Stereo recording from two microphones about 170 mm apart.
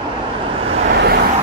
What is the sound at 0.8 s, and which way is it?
Vehicle, 75° right (ahead or behind).